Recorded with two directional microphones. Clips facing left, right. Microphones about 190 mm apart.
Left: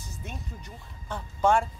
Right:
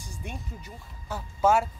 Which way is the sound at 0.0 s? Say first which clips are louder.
Right 1 dB; 15° right (ahead or behind).